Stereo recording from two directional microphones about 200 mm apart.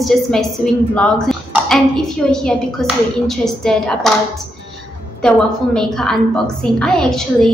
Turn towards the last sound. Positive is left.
turn(degrees=0)  # may be behind; listen again after turning